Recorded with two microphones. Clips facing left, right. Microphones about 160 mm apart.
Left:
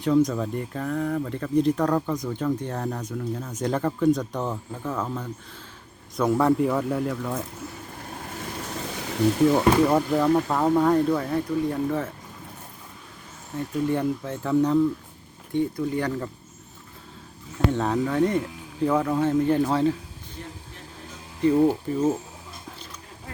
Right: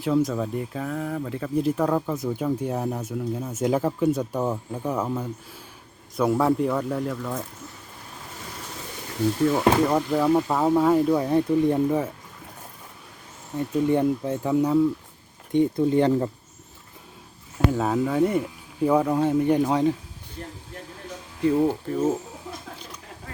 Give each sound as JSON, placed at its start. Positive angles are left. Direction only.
{"t": 0.0, "sound": "speech", "side_deg": -5}
{"t": 9.9, "sound": "speech", "side_deg": 0}
{"t": 11.1, "sound": "speech", "side_deg": -20}
{"t": 13.6, "sound": "speech", "side_deg": -20}
{"t": 15.5, "sound": "speech", "side_deg": -25}
{"t": 17.7, "sound": "speech", "side_deg": -5}
{"t": 21.4, "sound": "speech", "side_deg": 0}